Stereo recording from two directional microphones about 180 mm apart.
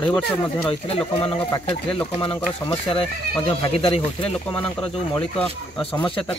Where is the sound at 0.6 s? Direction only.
30° left (ahead or behind).